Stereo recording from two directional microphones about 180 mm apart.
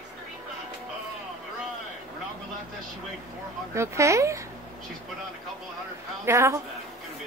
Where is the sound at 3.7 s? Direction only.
15° right (ahead or behind).